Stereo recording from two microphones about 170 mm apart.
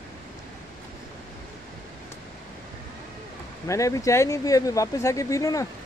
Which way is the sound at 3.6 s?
20° left (ahead or behind).